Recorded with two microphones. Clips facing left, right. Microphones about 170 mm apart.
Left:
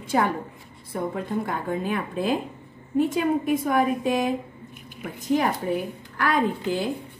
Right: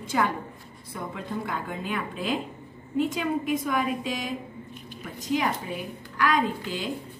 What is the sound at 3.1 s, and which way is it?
A woman's voice, 50° left (ahead or behind).